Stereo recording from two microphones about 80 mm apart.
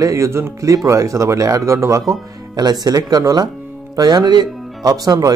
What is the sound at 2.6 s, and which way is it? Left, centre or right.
Speech, right.